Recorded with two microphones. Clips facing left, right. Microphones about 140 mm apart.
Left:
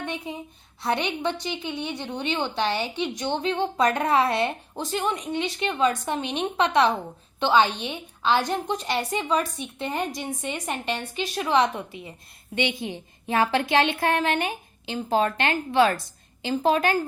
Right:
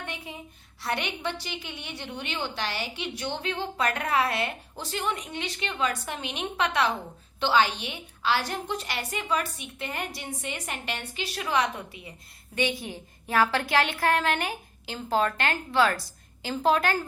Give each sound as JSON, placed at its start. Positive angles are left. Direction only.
{"t": 0.0, "sound": "a woman's voice", "side_deg": 20}